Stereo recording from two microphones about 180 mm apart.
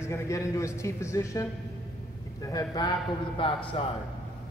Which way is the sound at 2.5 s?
20° left (ahead or behind).